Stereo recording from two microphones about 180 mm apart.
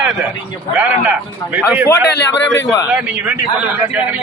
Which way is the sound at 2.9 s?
5° right (ahead or behind).